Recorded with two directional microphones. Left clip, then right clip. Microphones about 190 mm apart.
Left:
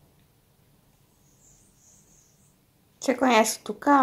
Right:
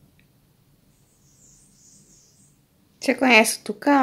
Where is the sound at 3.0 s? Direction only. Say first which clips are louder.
Right 4 dB; 20° right (ahead or behind).